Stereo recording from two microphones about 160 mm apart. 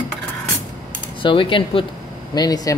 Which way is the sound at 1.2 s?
30° left (ahead or behind).